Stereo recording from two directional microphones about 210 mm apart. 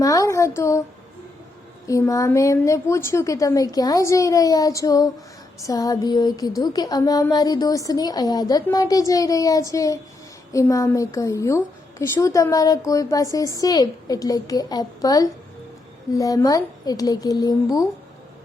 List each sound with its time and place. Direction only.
0.0 s speech: 15° left (ahead or behind)
1.9 s a woman's voice: 15° left (ahead or behind)